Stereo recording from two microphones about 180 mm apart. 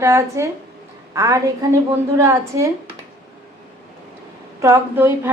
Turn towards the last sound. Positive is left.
turn(degrees=-15)  # may be behind; listen again after turning